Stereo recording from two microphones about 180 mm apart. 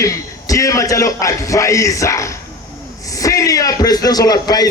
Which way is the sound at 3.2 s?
20° left (ahead or behind).